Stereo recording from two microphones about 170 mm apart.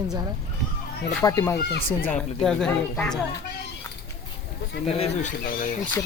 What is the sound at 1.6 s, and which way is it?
Speech, 70° left (ahead or behind).